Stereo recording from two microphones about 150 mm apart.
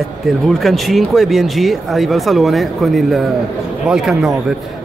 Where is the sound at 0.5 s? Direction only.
Centre (ahead or behind).